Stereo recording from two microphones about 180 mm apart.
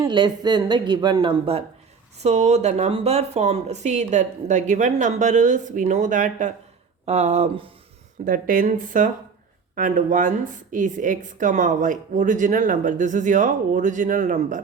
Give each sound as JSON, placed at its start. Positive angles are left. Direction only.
{"t": 0.0, "sound": "speech", "side_deg": -25}
{"t": 8.2, "sound": "speech", "side_deg": -50}